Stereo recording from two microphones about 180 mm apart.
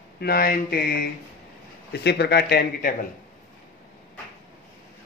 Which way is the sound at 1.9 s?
70° left (ahead or behind).